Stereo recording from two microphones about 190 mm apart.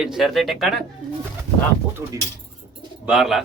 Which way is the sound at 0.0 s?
Centre (ahead or behind).